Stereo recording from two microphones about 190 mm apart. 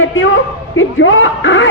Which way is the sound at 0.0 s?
75° left (ahead or behind).